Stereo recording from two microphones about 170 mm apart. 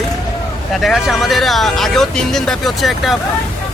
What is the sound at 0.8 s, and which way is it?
Speech, centre (ahead or behind).